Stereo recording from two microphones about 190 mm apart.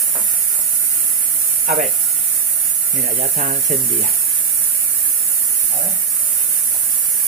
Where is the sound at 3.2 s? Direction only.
50° right (ahead or behind).